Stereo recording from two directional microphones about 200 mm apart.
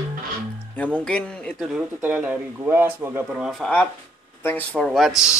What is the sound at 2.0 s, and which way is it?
Speech, 5° right (ahead or behind).